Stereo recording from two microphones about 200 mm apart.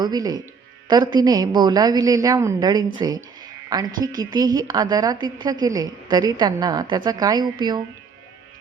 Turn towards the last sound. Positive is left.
turn(degrees=-20)  # may be behind; listen again after turning